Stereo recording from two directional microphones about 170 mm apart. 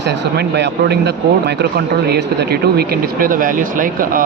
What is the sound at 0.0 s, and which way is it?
Speech, 90° right.